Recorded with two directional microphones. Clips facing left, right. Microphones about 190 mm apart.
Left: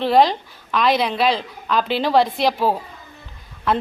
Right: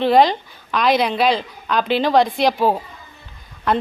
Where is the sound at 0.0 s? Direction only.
Centre (ahead or behind).